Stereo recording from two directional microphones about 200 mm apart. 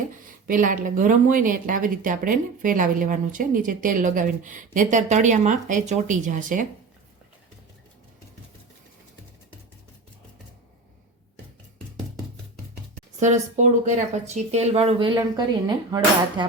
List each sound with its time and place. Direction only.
0.4 s speech: 45° right (ahead or behind)
13.1 s speech: 35° right (ahead or behind); by 16.0 s 20° right (ahead or behind)